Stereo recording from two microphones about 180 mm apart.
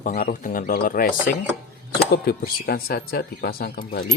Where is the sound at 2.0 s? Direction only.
60° left (ahead or behind).